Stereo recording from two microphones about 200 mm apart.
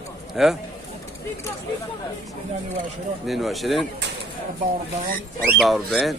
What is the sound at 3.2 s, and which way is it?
Speech, centre (ahead or behind).